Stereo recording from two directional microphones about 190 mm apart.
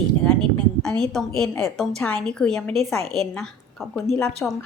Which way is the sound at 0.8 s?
5° left (ahead or behind).